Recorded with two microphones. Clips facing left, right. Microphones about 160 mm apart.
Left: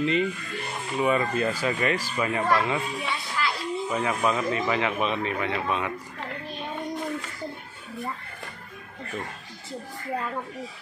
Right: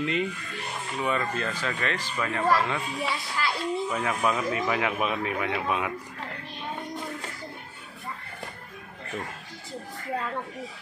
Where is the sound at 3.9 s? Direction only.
Centre (ahead or behind).